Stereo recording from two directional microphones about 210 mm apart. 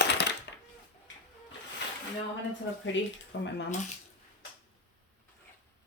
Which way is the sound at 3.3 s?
60° left (ahead or behind).